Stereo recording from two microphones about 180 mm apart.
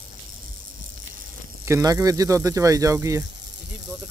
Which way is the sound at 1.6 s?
15° right (ahead or behind).